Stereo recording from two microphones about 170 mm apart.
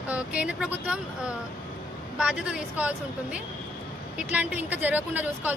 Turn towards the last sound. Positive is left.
turn(degrees=-10)  # may be behind; listen again after turning